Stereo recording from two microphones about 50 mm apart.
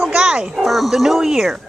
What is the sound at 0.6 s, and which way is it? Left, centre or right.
Speech, centre.